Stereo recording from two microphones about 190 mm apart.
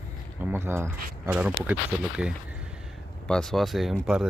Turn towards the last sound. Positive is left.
turn(degrees=0)  # may be behind; listen again after turning